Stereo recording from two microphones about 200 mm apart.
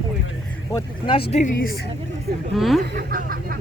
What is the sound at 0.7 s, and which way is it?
Speech, 25° left (ahead or behind).